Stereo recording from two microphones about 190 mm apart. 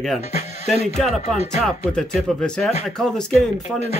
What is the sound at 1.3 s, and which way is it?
Speech, centre (ahead or behind).